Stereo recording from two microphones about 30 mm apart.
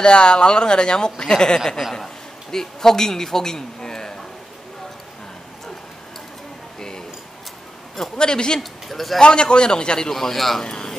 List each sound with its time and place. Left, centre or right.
0.0 s a man's voice: left
6.8 s a sound: left
8.2 s a man's voice: left
8.5 s speech: centre
9.2 s a man's voice: left
10.0 s a man's voice: centre
10.3 s speech: centre
10.6 s speech: left